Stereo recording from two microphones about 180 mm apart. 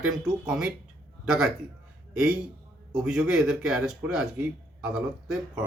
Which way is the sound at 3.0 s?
5° right (ahead or behind).